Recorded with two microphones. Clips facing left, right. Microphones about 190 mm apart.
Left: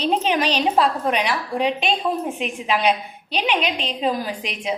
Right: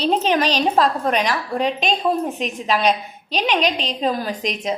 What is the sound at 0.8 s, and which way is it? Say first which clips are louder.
Speech: right 1 dB; 10° left (ahead or behind).